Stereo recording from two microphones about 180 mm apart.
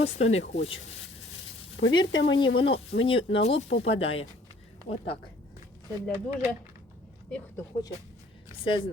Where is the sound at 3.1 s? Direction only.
30° left (ahead or behind).